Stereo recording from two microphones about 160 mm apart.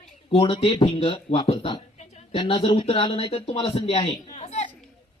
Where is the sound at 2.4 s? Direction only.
35° left (ahead or behind).